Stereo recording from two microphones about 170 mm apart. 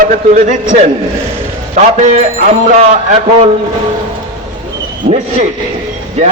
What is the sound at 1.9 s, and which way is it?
Speech, 45° right (ahead or behind).